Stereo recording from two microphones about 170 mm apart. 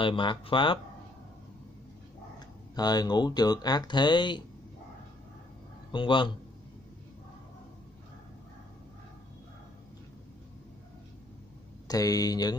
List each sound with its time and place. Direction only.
0.0 s speech: 30° left (ahead or behind)
2.3 s speech: 25° left (ahead or behind)
5.9 s speech: 30° left (ahead or behind)
11.9 s speech: 20° left (ahead or behind)